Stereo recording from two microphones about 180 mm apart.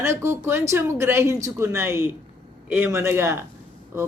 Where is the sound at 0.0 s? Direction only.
15° right (ahead or behind).